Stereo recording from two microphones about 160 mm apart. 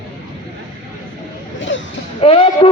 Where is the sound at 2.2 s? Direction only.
35° left (ahead or behind).